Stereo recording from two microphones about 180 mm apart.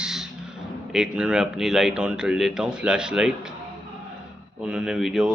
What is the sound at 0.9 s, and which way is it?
A man's voice, 5° right (ahead or behind).